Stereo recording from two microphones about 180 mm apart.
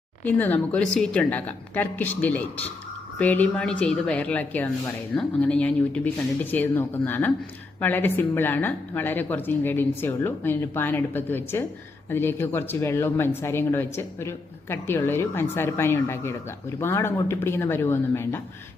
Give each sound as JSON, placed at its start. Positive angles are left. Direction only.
{"t": 0.3, "sound": "speech", "side_deg": 10}